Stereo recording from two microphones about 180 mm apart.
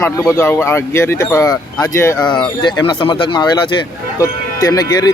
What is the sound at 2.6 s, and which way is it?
Speech, 25° left (ahead or behind).